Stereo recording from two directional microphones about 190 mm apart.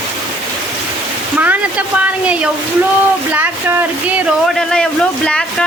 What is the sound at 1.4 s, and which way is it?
Speech, 5° right (ahead or behind).